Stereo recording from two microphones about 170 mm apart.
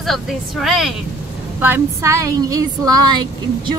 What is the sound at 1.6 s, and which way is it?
A woman's voice, 15° right (ahead or behind).